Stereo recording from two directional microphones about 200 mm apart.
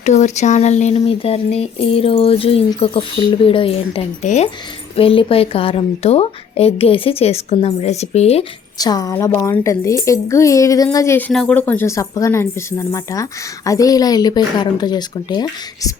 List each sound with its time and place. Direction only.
0.0 s speech: 35° left (ahead or behind)
8.8 s a child's voice: 20° left (ahead or behind)